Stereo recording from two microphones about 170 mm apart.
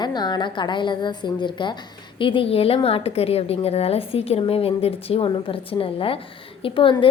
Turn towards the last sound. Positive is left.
turn(degrees=30)  # may be behind; listen again after turning